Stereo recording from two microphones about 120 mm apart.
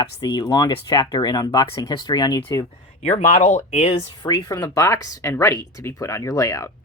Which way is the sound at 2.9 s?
70° left (ahead or behind).